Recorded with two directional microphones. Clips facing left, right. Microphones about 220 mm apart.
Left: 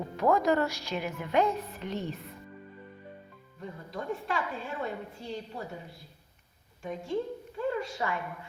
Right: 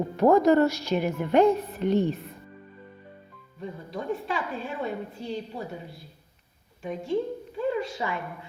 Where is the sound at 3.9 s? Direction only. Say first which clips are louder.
Right 3 dB; 20° right (ahead or behind).